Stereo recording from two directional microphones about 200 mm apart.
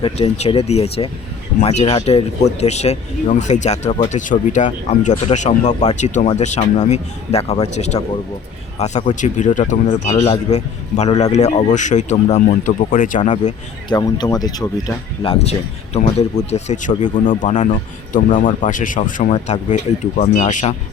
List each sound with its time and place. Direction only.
0.0 s speech: 30° left (ahead or behind)
13.9 s speech: 20° left (ahead or behind); by 17.7 s 40° left (ahead or behind)
18.7 s speech: 40° left (ahead or behind)